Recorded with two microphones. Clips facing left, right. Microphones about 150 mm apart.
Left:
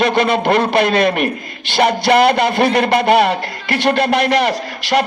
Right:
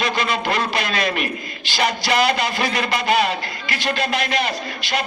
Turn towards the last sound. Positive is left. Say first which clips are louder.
# left 8 dB
turn(degrees=75)  # may be behind; listen again after turning